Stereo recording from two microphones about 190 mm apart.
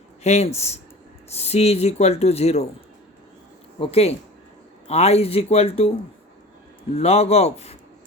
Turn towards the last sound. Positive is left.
turn(degrees=35)  # may be behind; listen again after turning